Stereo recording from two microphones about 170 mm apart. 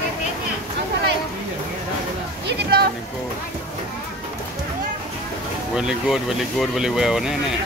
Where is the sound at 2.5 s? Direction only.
70° right (ahead or behind).